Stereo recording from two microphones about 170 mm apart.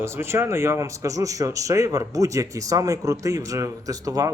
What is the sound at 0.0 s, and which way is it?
A man's voice, 15° right (ahead or behind).